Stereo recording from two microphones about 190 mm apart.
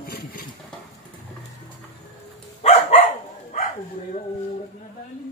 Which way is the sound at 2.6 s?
35° left (ahead or behind).